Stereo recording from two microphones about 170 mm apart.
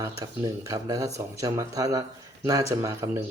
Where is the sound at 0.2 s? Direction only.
20° right (ahead or behind).